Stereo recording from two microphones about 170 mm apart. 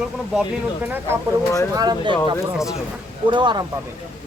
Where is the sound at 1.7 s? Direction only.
20° right (ahead or behind).